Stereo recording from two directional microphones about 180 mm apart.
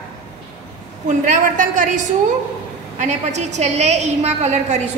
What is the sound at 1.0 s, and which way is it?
A woman's voice, 45° right (ahead or behind).